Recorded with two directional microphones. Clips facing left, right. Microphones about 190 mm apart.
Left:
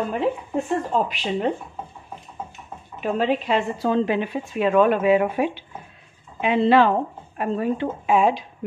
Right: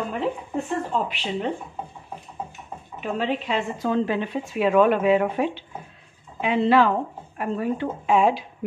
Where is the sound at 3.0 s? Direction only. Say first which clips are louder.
Left 4 dB; 40° left (ahead or behind).